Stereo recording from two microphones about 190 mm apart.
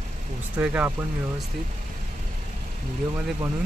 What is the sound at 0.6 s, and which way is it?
Speech, 10° right (ahead or behind).